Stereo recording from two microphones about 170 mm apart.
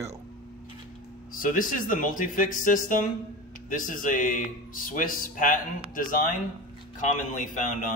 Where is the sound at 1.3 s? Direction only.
55° left (ahead or behind).